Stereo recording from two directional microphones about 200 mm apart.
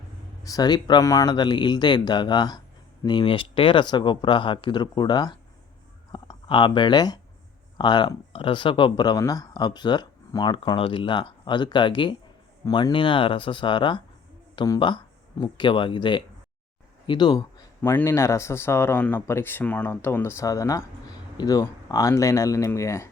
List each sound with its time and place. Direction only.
0.4 s a man's voice: 20° left (ahead or behind)